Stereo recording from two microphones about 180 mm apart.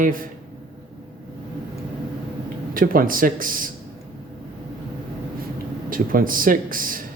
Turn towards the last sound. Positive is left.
turn(degrees=-50)  # may be behind; listen again after turning